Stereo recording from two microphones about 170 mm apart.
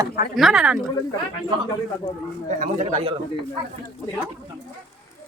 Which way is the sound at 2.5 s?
45° right (ahead or behind).